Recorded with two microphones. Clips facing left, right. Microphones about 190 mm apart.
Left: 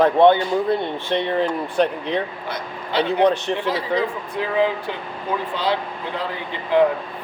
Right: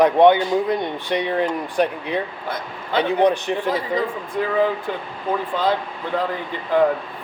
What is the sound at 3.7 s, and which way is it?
Speech, 50° right (ahead or behind).